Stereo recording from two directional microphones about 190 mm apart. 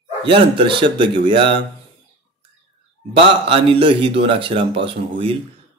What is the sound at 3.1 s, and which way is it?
Speech, 30° right (ahead or behind).